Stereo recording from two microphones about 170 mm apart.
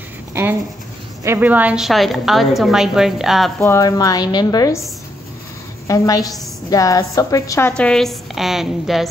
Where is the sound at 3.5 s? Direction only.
15° left (ahead or behind).